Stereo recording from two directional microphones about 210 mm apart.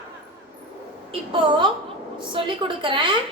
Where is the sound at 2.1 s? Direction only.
25° right (ahead or behind).